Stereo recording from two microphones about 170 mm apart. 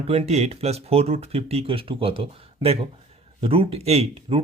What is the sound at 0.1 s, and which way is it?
Speech, 40° right (ahead or behind).